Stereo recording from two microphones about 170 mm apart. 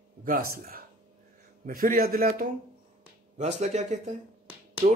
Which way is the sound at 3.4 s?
40° right (ahead or behind).